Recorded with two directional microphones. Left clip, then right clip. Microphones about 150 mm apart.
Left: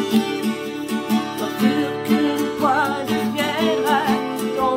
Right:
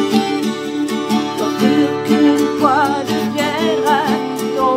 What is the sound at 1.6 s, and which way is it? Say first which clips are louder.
Music: right 6 dB; 35° right (ahead or behind).